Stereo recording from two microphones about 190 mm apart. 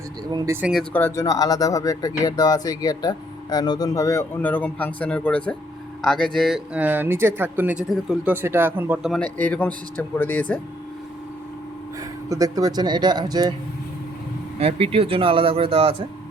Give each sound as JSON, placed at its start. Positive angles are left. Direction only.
{"t": 0.3, "sound": "speech", "side_deg": -20}
{"t": 0.7, "sound": "speech", "side_deg": 5}
{"t": 9.1, "sound": "speech", "side_deg": 10}
{"t": 12.3, "sound": "speech", "side_deg": -20}
{"t": 14.6, "sound": "speech", "side_deg": -30}